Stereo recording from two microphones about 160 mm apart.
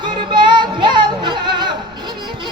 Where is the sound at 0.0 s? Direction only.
30° right (ahead or behind).